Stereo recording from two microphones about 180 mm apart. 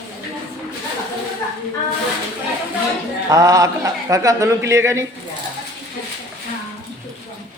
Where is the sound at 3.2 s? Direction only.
20° right (ahead or behind).